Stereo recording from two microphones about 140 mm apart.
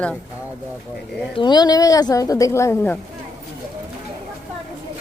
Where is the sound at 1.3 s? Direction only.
30° left (ahead or behind).